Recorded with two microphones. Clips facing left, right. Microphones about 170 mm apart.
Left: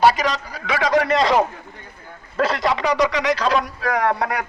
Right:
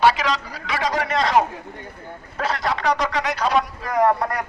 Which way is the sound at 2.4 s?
90° left.